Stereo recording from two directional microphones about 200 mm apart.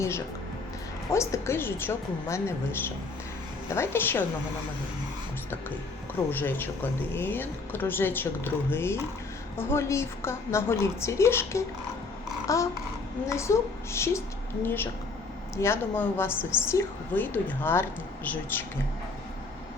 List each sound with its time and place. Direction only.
1.1 s speech: 15° left (ahead or behind)
6.3 s speech: 10° left (ahead or behind)